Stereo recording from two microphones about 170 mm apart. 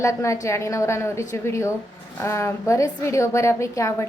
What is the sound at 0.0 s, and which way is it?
A woman's voice, 15° left (ahead or behind).